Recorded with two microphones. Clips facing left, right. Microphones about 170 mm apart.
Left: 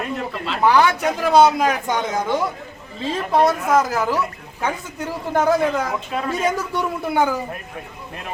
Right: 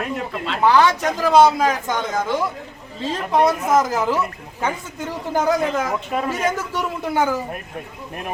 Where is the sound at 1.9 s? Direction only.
15° left (ahead or behind).